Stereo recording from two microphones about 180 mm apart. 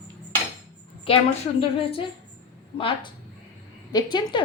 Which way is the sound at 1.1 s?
30° left (ahead or behind).